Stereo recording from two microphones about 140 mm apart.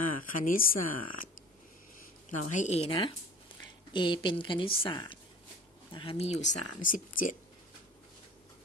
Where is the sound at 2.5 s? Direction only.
55° left (ahead or behind).